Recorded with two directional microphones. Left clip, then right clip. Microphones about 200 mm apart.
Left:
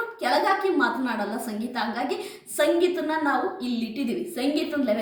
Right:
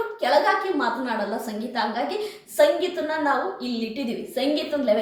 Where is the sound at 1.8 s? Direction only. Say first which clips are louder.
Right 4 dB; 5° left (ahead or behind).